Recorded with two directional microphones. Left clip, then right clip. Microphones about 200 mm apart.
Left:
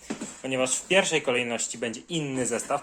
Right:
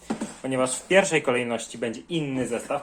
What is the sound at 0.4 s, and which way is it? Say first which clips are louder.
Speech: right 1 dB; 5° left (ahead or behind).